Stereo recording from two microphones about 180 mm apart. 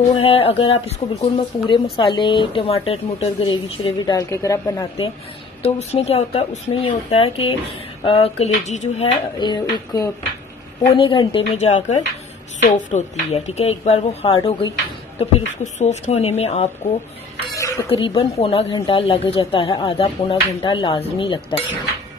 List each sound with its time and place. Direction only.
0.2 s speech: 30° left (ahead or behind)
5.6 s speech: 35° left (ahead or behind)
9.4 s speech: 25° left (ahead or behind)
11.5 s speech: 40° left (ahead or behind)
17.6 s a sound: 15° left (ahead or behind)
17.8 s speech: 30° left (ahead or behind)